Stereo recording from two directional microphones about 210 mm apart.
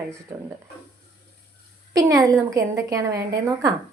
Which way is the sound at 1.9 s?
15° right (ahead or behind).